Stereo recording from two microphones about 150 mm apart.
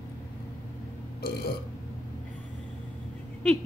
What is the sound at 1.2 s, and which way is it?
Burping, 90° left.